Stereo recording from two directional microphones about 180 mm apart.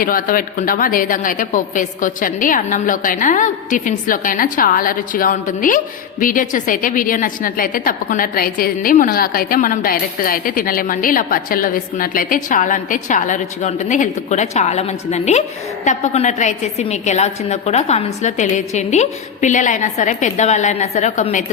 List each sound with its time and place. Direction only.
0.0 s a woman's voice: 50° left (ahead or behind)